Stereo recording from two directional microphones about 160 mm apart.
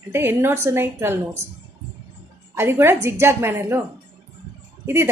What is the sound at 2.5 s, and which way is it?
A woman's voice, 15° right (ahead or behind).